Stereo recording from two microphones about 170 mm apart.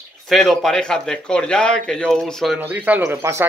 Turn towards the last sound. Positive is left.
turn(degrees=-15)  # may be behind; listen again after turning